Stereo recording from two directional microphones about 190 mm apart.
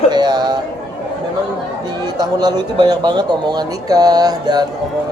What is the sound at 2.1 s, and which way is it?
Speech, 20° right (ahead or behind).